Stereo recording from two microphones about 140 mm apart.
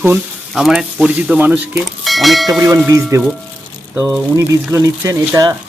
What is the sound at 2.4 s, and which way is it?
Speech, 25° right (ahead or behind).